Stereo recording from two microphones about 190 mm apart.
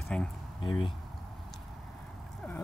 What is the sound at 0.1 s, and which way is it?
Speech, 5° left (ahead or behind).